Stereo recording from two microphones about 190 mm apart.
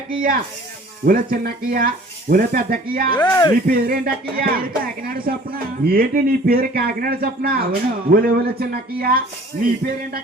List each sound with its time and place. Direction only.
1.0 s speech: 50° right (ahead or behind)
3.2 s speech: 20° left (ahead or behind)
3.7 s speech: 50° right (ahead or behind)